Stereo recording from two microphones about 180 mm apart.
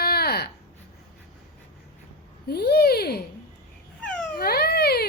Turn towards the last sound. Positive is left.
turn(degrees=65)  # may be behind; listen again after turning